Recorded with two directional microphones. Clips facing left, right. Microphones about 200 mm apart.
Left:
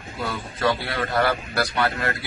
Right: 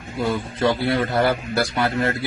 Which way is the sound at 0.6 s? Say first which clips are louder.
Right 3 dB; 25° right (ahead or behind).